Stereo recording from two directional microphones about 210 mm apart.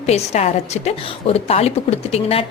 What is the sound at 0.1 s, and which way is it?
A woman's voice, 30° left (ahead or behind).